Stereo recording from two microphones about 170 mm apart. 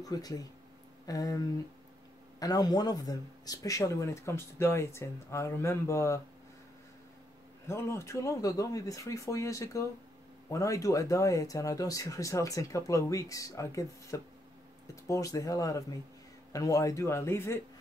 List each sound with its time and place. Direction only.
0.0 s speech: 20° left (ahead or behind)
2.4 s speech: 20° left (ahead or behind)
7.6 s speech: 15° left (ahead or behind)